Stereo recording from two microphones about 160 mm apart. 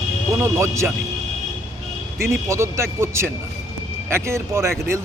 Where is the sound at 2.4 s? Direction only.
20° right (ahead or behind).